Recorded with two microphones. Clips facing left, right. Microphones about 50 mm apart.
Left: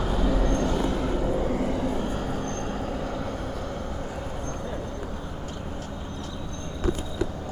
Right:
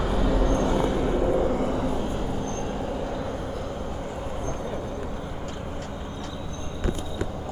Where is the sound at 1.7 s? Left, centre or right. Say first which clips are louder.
Right 1 dB; right.